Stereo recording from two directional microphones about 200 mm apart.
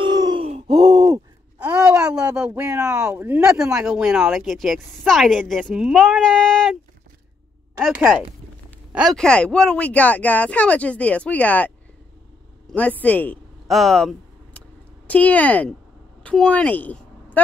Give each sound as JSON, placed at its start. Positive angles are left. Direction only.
{"t": 0.0, "sound": "a sound", "side_deg": -20}
{"t": 0.7, "sound": "gasp", "side_deg": -20}
{"t": 1.6, "sound": "a sound", "side_deg": -5}
{"t": 3.7, "sound": "a woman's voice", "side_deg": -5}
{"t": 7.8, "sound": "a woman's voice", "side_deg": 0}
{"t": 12.7, "sound": "a woman's voice", "side_deg": 10}